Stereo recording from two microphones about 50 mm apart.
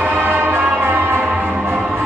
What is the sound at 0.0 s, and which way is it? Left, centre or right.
Music, right.